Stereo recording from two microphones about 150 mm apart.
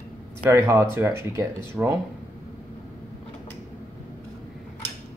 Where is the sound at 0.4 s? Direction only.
20° right (ahead or behind).